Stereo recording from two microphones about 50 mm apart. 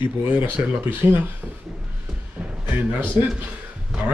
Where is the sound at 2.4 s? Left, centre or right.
Centre.